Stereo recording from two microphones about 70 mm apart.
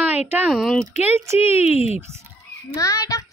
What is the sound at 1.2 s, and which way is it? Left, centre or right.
Speech, right.